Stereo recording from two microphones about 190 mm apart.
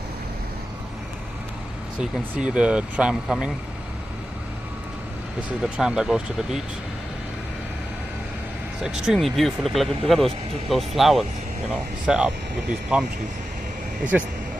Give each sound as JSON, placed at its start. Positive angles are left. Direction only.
{"t": 2.0, "sound": "speech", "side_deg": -5}
{"t": 5.6, "sound": "speech", "side_deg": 0}
{"t": 8.8, "sound": "speech", "side_deg": -5}
{"t": 14.1, "sound": "speech", "side_deg": -10}